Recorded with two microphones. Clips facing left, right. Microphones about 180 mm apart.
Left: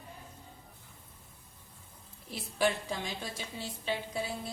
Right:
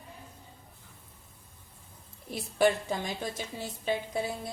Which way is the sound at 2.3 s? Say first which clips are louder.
Right 5 dB; 45° right (ahead or behind).